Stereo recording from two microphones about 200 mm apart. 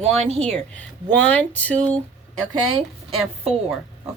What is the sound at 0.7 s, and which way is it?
Speech, 5° left (ahead or behind).